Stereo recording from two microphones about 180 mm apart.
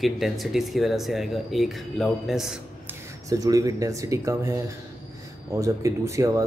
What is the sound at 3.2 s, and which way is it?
Speech, 20° right (ahead or behind).